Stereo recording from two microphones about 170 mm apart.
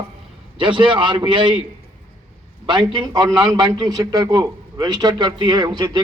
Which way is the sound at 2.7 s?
25° right (ahead or behind).